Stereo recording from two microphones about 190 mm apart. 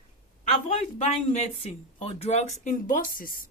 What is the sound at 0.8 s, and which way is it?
Speech, 35° left (ahead or behind).